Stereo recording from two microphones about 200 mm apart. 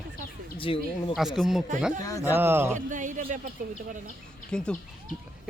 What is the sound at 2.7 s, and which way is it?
Speech, 40° right (ahead or behind).